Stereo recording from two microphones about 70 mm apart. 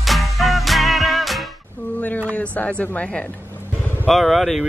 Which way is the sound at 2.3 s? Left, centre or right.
Centre.